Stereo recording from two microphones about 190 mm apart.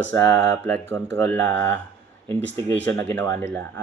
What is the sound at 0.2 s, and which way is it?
Speech, 65° right (ahead or behind).